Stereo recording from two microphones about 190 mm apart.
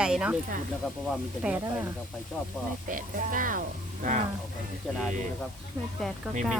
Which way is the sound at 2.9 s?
45° right (ahead or behind).